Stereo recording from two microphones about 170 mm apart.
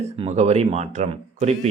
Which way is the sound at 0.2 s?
40° right (ahead or behind).